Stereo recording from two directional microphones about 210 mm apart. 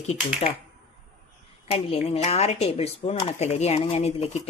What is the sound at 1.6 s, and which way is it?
A woman's voice, 30° left (ahead or behind).